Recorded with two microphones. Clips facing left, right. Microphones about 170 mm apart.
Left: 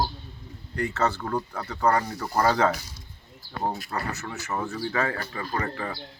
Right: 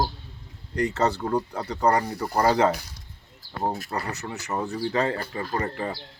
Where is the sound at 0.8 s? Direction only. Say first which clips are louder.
Right 3 dB; 15° right (ahead or behind).